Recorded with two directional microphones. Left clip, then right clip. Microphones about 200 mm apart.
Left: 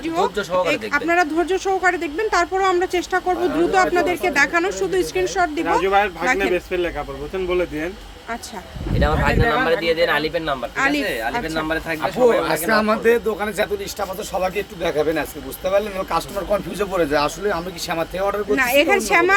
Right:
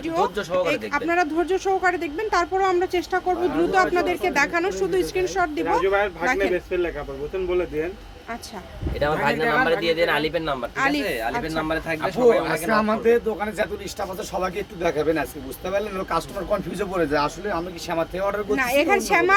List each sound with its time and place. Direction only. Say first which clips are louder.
0.0 s speech: left 2 dB; 5° left (ahead or behind)
5.8 s speech: left 5 dB; 45° left (ahead or behind)
6.2 s speech: left 3 dB; 5° left (ahead or behind)
6.5 s speech: left 3 dB; 50° left (ahead or behind)
9.0 s speech: left 2 dB; 10° right (ahead or behind)
10.8 s speech: left 3 dB; 5° left (ahead or behind)
11.0 s speech: left 2 dB; 10° right (ahead or behind)
11.3 s speech: left 3 dB; 5° left (ahead or behind)
11.5 s speech: left 2 dB; 10° right (ahead or behind)
12.4 s speech: left 3 dB; 20° left (ahead or behind)
14.3 s speech: left 5 dB; 15° left (ahead or behind)
18.5 s speech: left 4 dB; 5° left (ahead or behind)